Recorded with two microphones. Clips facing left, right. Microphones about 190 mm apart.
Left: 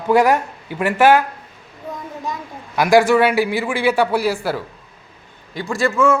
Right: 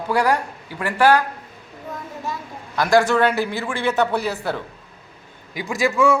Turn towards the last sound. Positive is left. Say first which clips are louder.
# left 1 dB
turn(degrees=0)  # may be behind; listen again after turning